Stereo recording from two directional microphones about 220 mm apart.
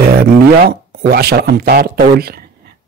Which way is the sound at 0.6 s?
45° right (ahead or behind).